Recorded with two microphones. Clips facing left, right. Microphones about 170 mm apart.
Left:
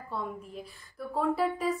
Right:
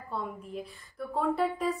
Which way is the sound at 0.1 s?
Centre (ahead or behind).